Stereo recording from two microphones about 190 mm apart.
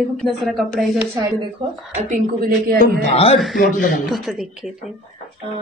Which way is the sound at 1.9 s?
45° right (ahead or behind).